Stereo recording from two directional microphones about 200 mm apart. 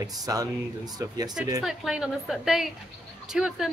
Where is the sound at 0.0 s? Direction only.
20° right (ahead or behind).